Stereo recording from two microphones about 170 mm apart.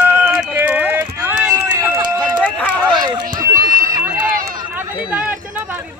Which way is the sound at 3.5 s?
55° right (ahead or behind).